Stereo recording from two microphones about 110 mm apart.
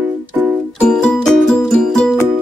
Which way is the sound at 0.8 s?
10° left (ahead or behind).